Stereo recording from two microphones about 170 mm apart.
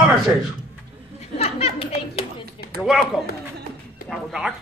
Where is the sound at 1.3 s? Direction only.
35° left (ahead or behind).